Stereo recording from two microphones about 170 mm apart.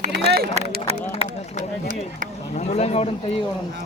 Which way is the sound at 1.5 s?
50° right (ahead or behind).